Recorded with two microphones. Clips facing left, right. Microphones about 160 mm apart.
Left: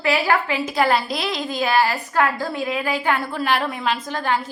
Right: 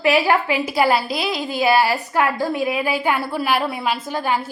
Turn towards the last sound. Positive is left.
turn(degrees=-10)  # may be behind; listen again after turning